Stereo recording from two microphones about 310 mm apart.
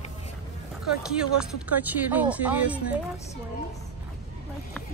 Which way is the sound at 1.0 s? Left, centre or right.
Centre.